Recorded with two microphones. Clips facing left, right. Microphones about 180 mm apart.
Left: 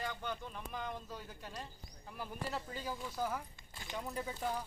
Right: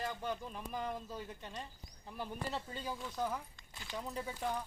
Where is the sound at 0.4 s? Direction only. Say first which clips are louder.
Right 2 dB; 5° right (ahead or behind).